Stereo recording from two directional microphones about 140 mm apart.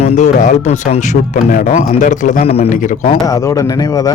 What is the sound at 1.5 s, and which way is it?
Speech, 90° left.